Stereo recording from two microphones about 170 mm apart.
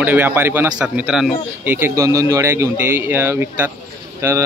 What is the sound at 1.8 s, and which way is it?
Speech, 20° right (ahead or behind).